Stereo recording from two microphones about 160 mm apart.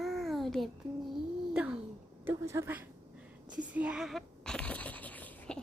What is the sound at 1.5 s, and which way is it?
Owl, 5° right (ahead or behind).